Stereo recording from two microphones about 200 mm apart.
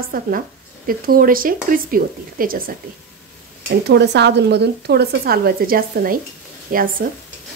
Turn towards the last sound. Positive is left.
turn(degrees=-45)  # may be behind; listen again after turning